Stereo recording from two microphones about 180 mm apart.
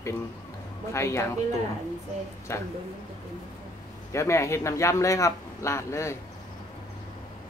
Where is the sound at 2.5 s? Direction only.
15° left (ahead or behind).